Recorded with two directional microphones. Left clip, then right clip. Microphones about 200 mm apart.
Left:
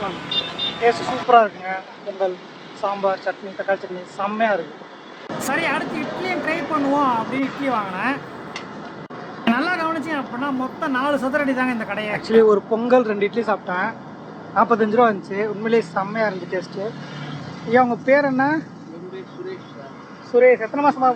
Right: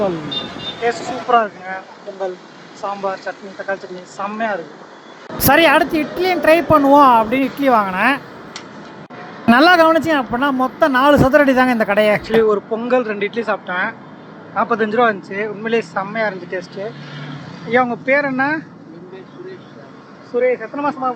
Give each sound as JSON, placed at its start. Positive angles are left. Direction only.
{"t": 0.8, "sound": "speech", "side_deg": 10}
{"t": 2.8, "sound": "speech", "side_deg": 10}
{"t": 5.4, "sound": "speech", "side_deg": -35}
{"t": 9.5, "sound": "speech", "side_deg": -40}
{"t": 12.2, "sound": "speech", "side_deg": 15}
{"t": 20.3, "sound": "speech", "side_deg": 15}